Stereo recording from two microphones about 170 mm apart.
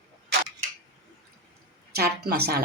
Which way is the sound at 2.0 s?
70° right (ahead or behind).